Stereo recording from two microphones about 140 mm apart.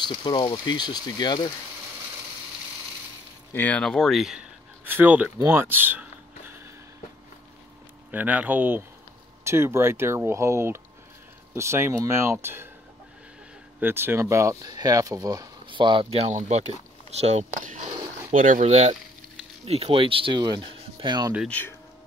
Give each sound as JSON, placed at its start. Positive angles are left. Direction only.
{"t": 0.2, "sound": "speech", "side_deg": 30}
{"t": 3.5, "sound": "speech", "side_deg": 10}
{"t": 4.8, "sound": "speech", "side_deg": -15}
{"t": 5.4, "sound": "a sound", "side_deg": -15}
{"t": 8.1, "sound": "speech", "side_deg": -10}
{"t": 13.7, "sound": "speech", "side_deg": -15}
{"t": 18.3, "sound": "speech", "side_deg": -65}
{"t": 21.5, "sound": "speech", "side_deg": 10}